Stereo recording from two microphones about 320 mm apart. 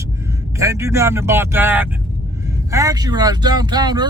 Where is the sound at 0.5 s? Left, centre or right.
Centre.